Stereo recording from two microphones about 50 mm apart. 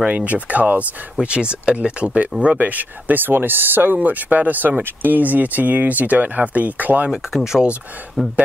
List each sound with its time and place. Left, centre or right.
0.0 s speech: right
7.1 s speech: centre